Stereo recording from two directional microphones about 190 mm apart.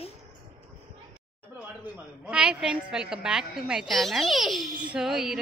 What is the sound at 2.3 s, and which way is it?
A woman's voice, 5° right (ahead or behind).